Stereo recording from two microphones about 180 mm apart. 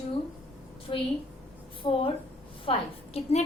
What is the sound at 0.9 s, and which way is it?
A woman's voice, 30° left (ahead or behind).